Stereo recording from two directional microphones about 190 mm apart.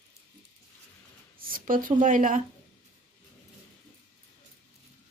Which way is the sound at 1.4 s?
50° right (ahead or behind).